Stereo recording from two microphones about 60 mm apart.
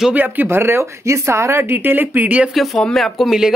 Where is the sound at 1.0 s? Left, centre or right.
Right.